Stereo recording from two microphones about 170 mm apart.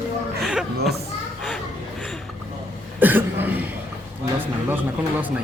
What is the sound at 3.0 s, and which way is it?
Cough, 10° right (ahead or behind).